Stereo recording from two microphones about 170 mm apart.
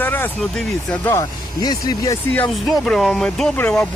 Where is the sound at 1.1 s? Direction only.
25° left (ahead or behind).